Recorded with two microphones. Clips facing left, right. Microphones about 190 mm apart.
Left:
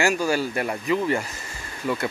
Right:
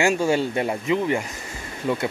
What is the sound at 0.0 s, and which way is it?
Speech, 25° right (ahead or behind).